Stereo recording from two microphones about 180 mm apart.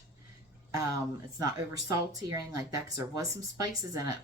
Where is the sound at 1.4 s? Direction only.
20° right (ahead or behind).